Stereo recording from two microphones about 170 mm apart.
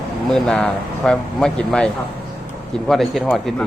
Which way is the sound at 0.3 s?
5° left (ahead or behind).